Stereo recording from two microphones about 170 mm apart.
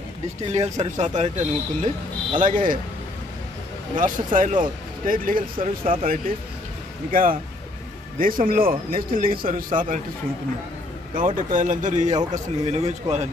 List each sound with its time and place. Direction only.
0.5 s speech: 40° right (ahead or behind)
2.4 s speech: 55° right (ahead or behind)
3.9 s speech: 50° right (ahead or behind)
11.1 s speech: 50° right (ahead or behind)
12.1 s a man's voice: 25° right (ahead or behind)
12.7 s speech: 40° right (ahead or behind)